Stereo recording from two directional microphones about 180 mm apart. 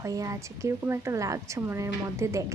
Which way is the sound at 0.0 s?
20° right (ahead or behind).